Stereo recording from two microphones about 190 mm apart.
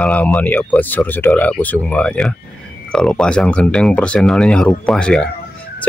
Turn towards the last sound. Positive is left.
turn(degrees=5)  # may be behind; listen again after turning